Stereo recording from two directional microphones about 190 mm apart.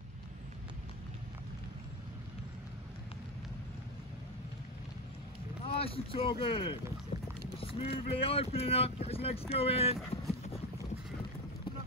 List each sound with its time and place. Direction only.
5.7 s speech: 30° left (ahead or behind)